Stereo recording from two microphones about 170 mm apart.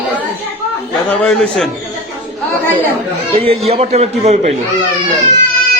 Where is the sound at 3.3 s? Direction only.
35° right (ahead or behind).